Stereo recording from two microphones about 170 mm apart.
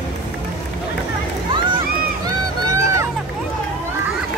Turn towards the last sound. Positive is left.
turn(degrees=-15)  # may be behind; listen again after turning